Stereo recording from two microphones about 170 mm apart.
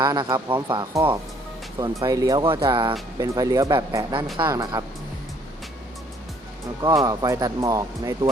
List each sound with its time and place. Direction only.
0.0 s speech: 25° right (ahead or behind)
6.8 s speech: 20° right (ahead or behind)